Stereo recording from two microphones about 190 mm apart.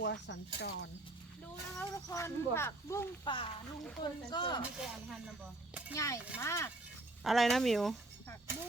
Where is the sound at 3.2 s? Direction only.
25° left (ahead or behind).